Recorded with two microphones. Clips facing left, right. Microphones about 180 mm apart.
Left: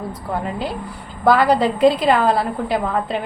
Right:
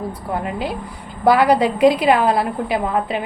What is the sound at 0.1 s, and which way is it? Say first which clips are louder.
A woman's voice: even; 10° right (ahead or behind).